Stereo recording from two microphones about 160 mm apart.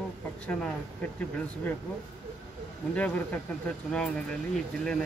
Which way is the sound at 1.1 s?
10° left (ahead or behind).